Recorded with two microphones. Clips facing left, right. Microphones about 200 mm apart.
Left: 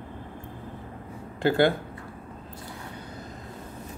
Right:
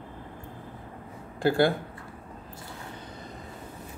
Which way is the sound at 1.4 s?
20° left (ahead or behind).